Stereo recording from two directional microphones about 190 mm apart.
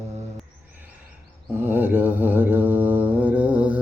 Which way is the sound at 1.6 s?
10° right (ahead or behind).